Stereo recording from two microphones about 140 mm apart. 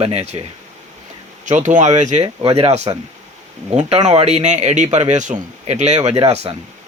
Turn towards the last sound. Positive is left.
turn(degrees=-45)  # may be behind; listen again after turning